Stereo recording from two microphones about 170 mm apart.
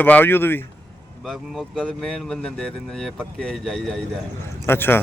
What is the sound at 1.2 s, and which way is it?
Speech, centre (ahead or behind).